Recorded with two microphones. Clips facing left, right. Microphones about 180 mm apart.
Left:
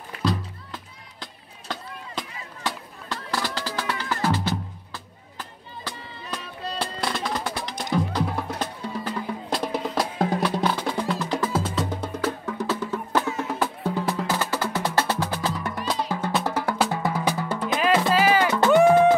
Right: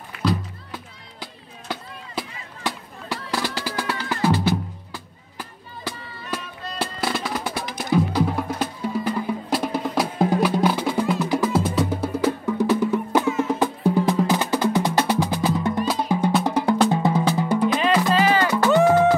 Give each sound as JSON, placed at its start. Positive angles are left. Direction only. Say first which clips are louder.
{"t": 0.2, "sound": "music", "louder": "right 3 dB", "side_deg": 0}
{"t": 1.2, "sound": "chop", "louder": "right 3 dB", "side_deg": -10}
{"t": 6.8, "sound": "music", "louder": "right 3 dB", "side_deg": -5}
{"t": 16.4, "sound": "drum", "louder": "right 5 dB", "side_deg": -15}
{"t": 17.4, "sound": "music", "louder": "right 7 dB", "side_deg": -15}
{"t": 17.7, "sound": "music", "louder": "left 4 dB", "side_deg": 5}